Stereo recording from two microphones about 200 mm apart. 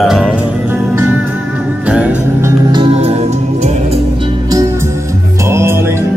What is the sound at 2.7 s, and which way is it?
Music, 25° right (ahead or behind).